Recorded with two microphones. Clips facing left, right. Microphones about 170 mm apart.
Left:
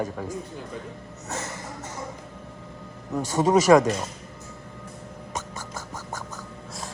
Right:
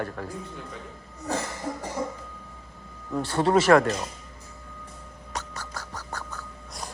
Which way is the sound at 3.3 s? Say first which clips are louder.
Left 2 dB; 15° left (ahead or behind).